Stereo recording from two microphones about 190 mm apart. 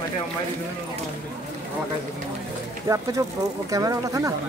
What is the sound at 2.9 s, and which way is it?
Speech, 15° right (ahead or behind).